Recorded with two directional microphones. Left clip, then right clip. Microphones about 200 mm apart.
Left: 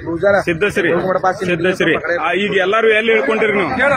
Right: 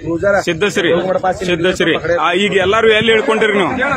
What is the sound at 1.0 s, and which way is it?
Speech, 40° right (ahead or behind).